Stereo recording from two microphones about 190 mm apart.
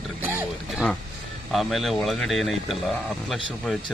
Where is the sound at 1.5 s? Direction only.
Centre (ahead or behind).